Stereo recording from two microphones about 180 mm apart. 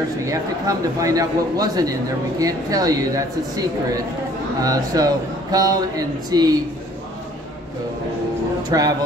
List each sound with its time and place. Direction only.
0.3 s speech: 20° right (ahead or behind)
8.6 s speech: 20° right (ahead or behind)